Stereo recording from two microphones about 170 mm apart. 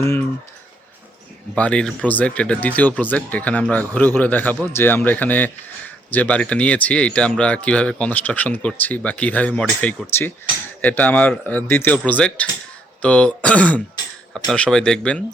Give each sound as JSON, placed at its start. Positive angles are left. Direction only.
{"t": 0.0, "sound": "speech", "side_deg": 15}
{"t": 1.5, "sound": "speech", "side_deg": 5}